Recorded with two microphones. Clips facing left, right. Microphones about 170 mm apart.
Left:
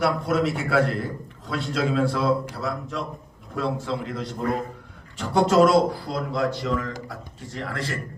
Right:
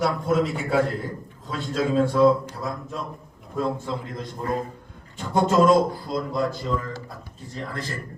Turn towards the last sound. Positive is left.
turn(degrees=80)